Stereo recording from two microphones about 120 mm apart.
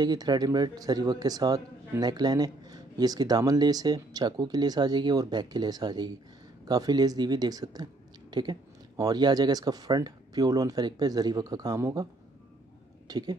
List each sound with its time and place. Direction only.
0.0 s speech: 35° right (ahead or behind)
13.1 s speech: 35° right (ahead or behind)